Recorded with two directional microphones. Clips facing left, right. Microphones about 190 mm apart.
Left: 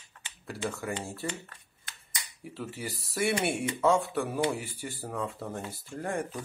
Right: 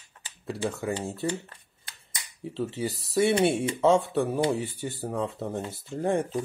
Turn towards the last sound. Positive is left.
turn(degrees=-25)  # may be behind; listen again after turning